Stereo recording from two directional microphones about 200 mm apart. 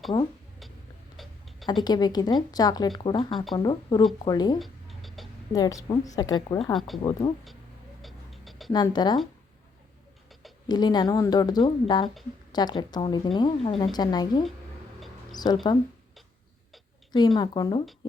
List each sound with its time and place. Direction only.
1.1 s tick-tock: centre (ahead or behind)
1.8 s speech: 20° left (ahead or behind)
4.6 s a sound: centre (ahead or behind)
5.5 s speech: 20° left (ahead or behind)
6.7 s speech: centre (ahead or behind)
7.0 s speech: 20° left (ahead or behind)
8.0 s a sound: centre (ahead or behind)
8.7 s speech: 20° left (ahead or behind)
10.7 s speech: 20° left (ahead or behind)
17.1 s speech: 20° left (ahead or behind)